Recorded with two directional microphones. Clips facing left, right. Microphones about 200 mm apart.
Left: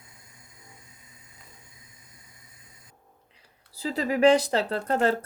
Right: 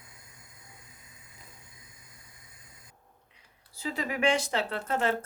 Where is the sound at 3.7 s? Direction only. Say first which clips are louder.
Left 6 dB; 35° left (ahead or behind).